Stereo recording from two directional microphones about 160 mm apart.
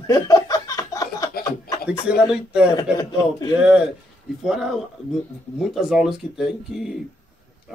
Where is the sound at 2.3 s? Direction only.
5° right (ahead or behind).